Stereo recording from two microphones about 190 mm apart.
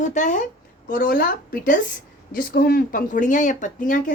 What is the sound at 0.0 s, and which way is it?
A woman's voice, 40° left (ahead or behind).